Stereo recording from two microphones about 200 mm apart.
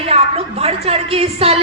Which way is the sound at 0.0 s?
30° right (ahead or behind).